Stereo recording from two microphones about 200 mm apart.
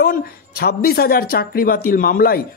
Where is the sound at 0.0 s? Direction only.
50° left (ahead or behind).